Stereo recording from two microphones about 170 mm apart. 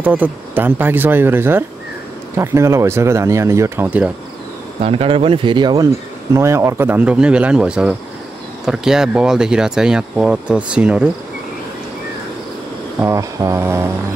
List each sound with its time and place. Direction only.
0.0 s speech: 10° right (ahead or behind)
4.8 s speech: 35° right (ahead or behind)
6.3 s speech: 15° right (ahead or behind)
13.0 s speech: 20° right (ahead or behind)